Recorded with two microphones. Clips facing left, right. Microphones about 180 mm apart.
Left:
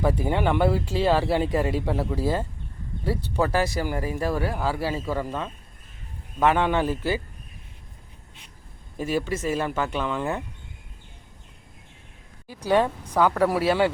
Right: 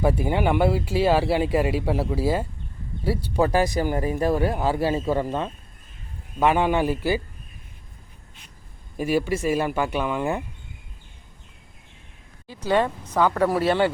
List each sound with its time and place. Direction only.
0.0 s speech: 10° right (ahead or behind)
9.0 s speech: 10° right (ahead or behind)
12.5 s speech: 10° left (ahead or behind)